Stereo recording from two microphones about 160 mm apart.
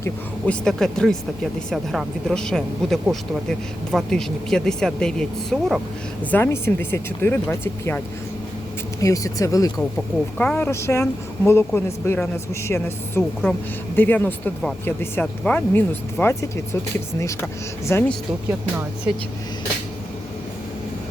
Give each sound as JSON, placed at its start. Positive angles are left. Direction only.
{"t": 0.0, "sound": "speech", "side_deg": 5}
{"t": 6.3, "sound": "speech", "side_deg": 15}
{"t": 10.3, "sound": "speech", "side_deg": 10}
{"t": 17.9, "sound": "speech", "side_deg": 15}
{"t": 19.1, "sound": "speech", "side_deg": -5}